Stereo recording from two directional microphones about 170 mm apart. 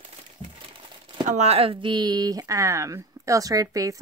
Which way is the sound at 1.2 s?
40° right (ahead or behind).